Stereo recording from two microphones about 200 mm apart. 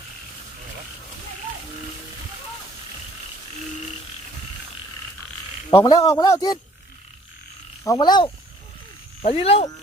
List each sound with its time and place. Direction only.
5.7 s a man's voice: 20° left (ahead or behind)
7.9 s speech: 20° left (ahead or behind)